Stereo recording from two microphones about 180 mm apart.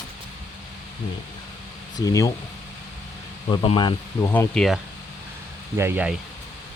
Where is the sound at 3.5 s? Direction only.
25° left (ahead or behind).